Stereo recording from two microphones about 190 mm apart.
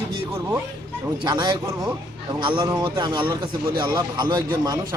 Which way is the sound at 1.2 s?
25° right (ahead or behind).